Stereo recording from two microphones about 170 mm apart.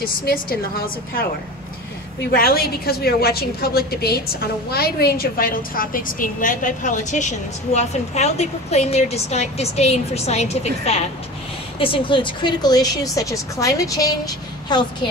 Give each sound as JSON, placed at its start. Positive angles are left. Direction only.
{"t": 0.0, "sound": "a woman's voice", "side_deg": 60}
{"t": 2.3, "sound": "a woman's voice", "side_deg": 60}